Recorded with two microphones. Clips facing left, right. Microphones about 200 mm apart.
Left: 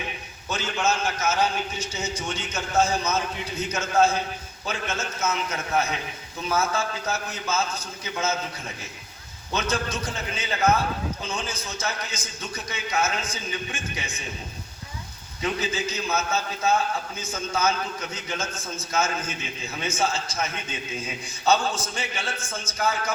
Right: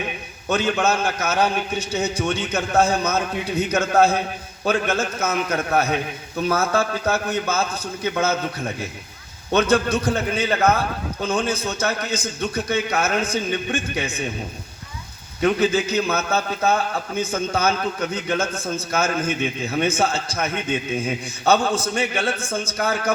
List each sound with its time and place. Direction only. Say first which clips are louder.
0.4 s a man's voice: right 6 dB; 60° right (ahead or behind)
15.4 s a man's voice: right 9 dB; 60° right (ahead or behind)